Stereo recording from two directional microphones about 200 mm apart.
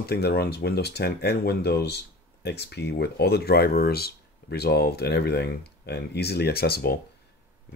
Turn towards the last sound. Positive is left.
turn(degrees=50)  # may be behind; listen again after turning